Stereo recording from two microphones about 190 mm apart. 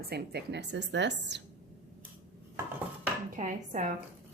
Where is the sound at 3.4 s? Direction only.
45° right (ahead or behind).